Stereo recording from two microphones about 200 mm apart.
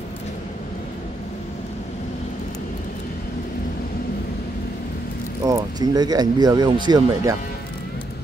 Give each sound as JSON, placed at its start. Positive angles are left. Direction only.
{"t": 5.4, "sound": "speech", "side_deg": -20}